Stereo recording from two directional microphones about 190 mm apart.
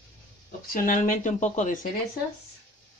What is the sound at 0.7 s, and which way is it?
Speech, 45° left (ahead or behind).